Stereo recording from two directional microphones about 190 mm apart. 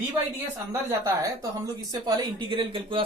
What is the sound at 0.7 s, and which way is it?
Speech, 15° right (ahead or behind).